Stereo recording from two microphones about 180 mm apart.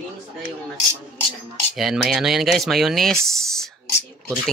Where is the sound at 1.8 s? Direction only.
Centre (ahead or behind).